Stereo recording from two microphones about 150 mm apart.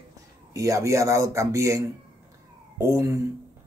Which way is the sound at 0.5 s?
20° right (ahead or behind).